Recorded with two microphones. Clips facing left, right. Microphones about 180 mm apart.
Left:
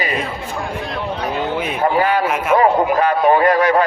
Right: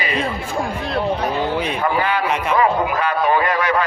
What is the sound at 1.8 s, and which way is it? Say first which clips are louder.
A man's voice: left 7 dB; 40° left (ahead or behind).